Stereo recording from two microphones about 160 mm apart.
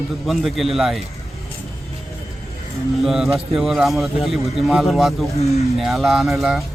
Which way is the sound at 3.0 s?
Centre (ahead or behind).